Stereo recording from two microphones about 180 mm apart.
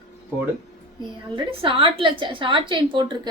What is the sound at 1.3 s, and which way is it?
A woman's voice, 30° right (ahead or behind).